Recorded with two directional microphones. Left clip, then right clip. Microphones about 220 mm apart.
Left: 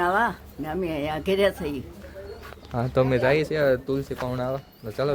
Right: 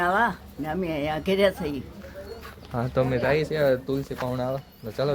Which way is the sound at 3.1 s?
45° left (ahead or behind).